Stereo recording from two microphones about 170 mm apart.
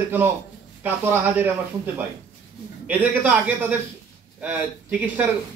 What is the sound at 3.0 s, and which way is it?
A man's voice, 10° right (ahead or behind).